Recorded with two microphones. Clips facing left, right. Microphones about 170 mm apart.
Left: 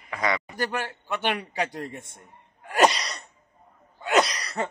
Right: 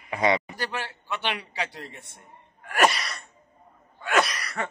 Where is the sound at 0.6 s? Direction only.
45° left (ahead or behind).